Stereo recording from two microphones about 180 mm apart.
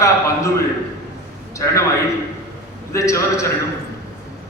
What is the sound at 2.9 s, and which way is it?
Speech, 15° left (ahead or behind).